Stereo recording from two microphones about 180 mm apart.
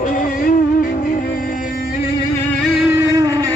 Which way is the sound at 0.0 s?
50° left (ahead or behind).